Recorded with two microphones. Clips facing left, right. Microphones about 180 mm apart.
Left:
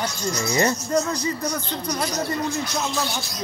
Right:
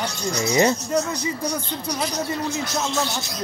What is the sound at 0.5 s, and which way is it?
Speech, 15° right (ahead or behind).